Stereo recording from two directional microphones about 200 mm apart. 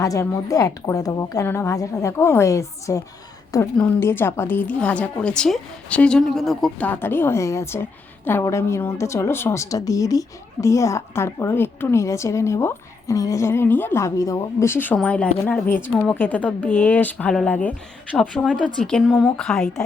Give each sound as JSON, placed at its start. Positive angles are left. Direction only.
{"t": 0.0, "sound": "a woman's voice", "side_deg": 15}